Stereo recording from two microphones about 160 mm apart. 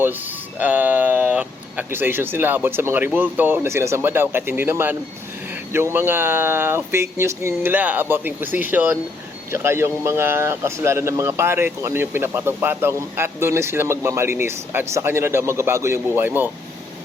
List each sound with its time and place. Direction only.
0.6 s speech: 10° right (ahead or behind)